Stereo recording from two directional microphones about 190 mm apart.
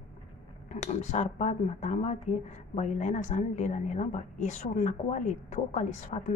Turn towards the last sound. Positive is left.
turn(degrees=40)  # may be behind; listen again after turning